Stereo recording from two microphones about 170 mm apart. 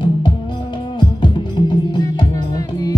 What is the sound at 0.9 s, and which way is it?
Music, 25° left (ahead or behind).